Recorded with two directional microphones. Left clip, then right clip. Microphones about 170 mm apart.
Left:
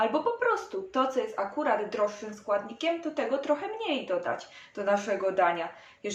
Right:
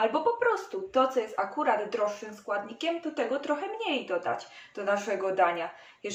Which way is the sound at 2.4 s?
35° left (ahead or behind).